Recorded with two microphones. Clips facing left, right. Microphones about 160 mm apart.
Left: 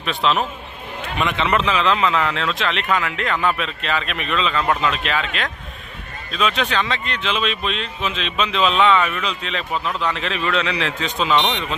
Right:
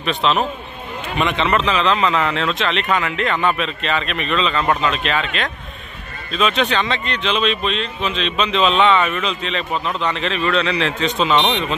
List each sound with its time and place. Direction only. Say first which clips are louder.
0.0 s a man's voice: right 2 dB; 5° left (ahead or behind)
11.3 s speech: even; 20° right (ahead or behind)